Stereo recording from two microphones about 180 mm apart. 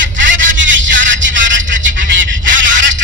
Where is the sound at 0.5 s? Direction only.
90° right.